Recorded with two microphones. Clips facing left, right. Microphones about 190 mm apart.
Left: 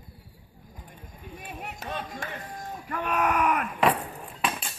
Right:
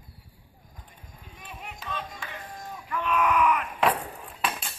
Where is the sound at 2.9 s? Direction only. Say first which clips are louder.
Right 1 dB; 45° left (ahead or behind).